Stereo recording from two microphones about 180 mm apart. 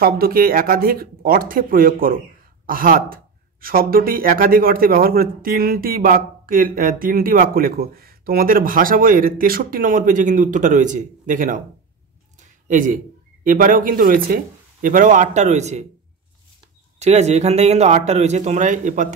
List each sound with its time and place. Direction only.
0.0 s a man's voice: 55° right (ahead or behind); by 15.8 s 40° right (ahead or behind)
17.0 s speech: 35° right (ahead or behind)